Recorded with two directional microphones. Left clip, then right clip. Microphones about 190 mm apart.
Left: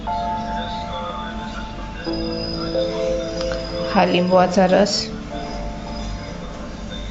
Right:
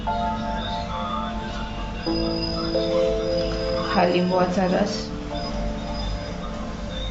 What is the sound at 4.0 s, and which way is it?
A woman's voice, 45° left (ahead or behind).